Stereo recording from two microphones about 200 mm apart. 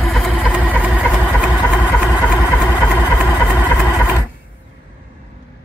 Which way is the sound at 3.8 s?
20° left (ahead or behind).